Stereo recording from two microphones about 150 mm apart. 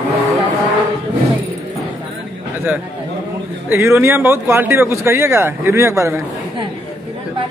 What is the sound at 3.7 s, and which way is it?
Speech, 15° right (ahead or behind).